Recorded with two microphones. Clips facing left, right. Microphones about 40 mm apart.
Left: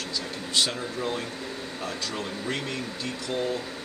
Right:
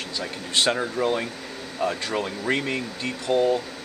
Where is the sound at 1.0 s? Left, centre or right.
Right.